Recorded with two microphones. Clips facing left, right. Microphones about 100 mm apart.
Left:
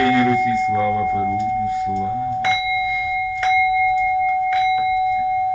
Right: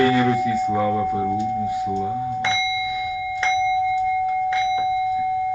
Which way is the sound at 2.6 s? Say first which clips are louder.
Left 3 dB; 45° left (ahead or behind).